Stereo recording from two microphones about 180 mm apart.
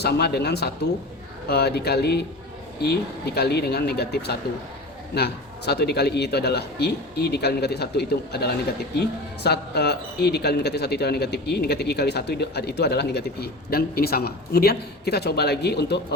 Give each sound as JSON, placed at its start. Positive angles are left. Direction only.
{"t": 0.0, "sound": "speech", "side_deg": 65}